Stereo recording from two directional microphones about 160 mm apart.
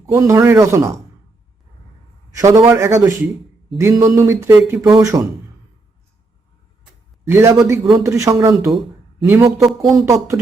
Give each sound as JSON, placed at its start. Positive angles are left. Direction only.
{"t": 0.0, "sound": "speech", "side_deg": -20}
{"t": 2.3, "sound": "a man's voice", "side_deg": -20}
{"t": 7.3, "sound": "a man's voice", "side_deg": -15}
{"t": 9.6, "sound": "speech", "side_deg": 0}
{"t": 9.9, "sound": "speech", "side_deg": -20}